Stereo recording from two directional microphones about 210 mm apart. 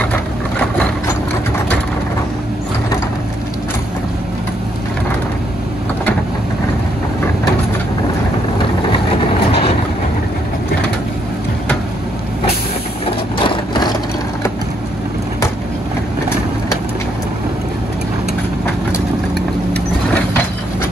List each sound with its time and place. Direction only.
0.0 s vehicle: 5° left (ahead or behind)
13.4 s vehicle: 20° left (ahead or behind)